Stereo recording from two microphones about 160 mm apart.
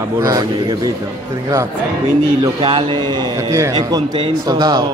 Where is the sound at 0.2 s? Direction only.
25° right (ahead or behind).